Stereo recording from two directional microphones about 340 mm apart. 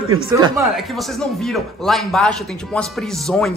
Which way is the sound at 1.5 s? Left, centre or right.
Centre.